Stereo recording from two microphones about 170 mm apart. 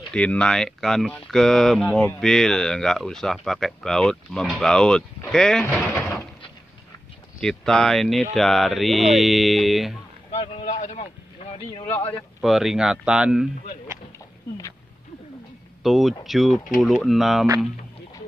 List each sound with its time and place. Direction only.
0.1 s speech: 5° left (ahead or behind)
5.9 s a sound: 15° left (ahead or behind)
7.3 s speech: 5° left (ahead or behind)
10.3 s boat: 35° left (ahead or behind)
10.8 s vehicle: 40° left (ahead or behind)
12.4 s speech: centre (ahead or behind)
15.8 s speech: centre (ahead or behind)